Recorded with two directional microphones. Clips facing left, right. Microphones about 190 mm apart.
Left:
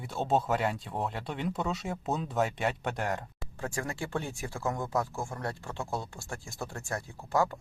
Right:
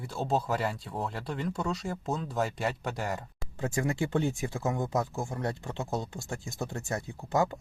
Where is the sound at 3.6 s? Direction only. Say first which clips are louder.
Right 5 dB; 20° right (ahead or behind).